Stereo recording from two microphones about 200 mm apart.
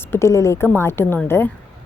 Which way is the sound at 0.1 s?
15° left (ahead or behind).